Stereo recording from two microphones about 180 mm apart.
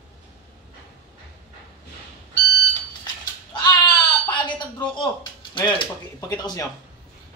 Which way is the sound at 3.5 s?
25° left (ahead or behind).